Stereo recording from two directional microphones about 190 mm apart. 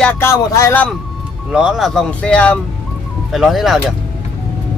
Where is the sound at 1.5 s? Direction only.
5° right (ahead or behind).